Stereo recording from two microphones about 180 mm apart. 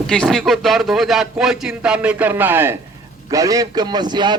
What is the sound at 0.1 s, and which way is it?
A man's voice, 5° left (ahead or behind).